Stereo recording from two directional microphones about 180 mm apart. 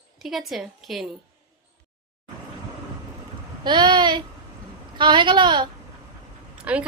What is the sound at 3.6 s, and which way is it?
A woman's voice, 25° right (ahead or behind).